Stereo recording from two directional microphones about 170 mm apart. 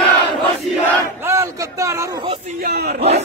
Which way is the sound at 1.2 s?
15° right (ahead or behind).